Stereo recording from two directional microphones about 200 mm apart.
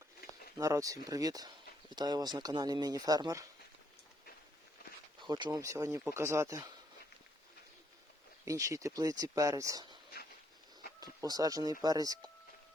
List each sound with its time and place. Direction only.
0.6 s speech: 15° right (ahead or behind)
5.2 s speech: 20° right (ahead or behind)
8.4 s speech: 15° right (ahead or behind)
11.0 s speech: 20° right (ahead or behind)